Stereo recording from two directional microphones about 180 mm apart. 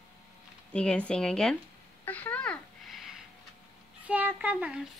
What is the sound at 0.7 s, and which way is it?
Speech, 5° left (ahead or behind).